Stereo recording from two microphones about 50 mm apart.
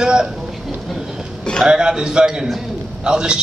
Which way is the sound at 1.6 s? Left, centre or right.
Centre.